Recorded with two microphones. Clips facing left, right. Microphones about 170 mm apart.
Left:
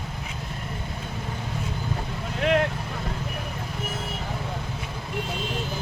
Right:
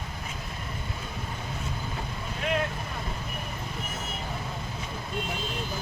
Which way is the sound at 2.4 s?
70° left (ahead or behind).